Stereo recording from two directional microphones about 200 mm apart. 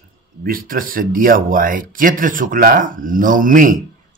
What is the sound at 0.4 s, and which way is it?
Speech, 45° right (ahead or behind).